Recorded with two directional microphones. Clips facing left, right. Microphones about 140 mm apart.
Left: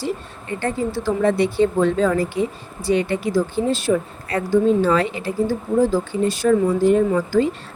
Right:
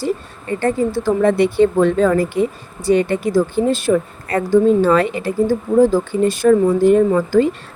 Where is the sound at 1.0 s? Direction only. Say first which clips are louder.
Right 3 dB; 55° right (ahead or behind).